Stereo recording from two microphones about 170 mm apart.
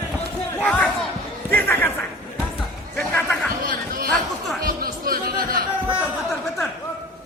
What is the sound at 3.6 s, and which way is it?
Chatter, 55° right (ahead or behind).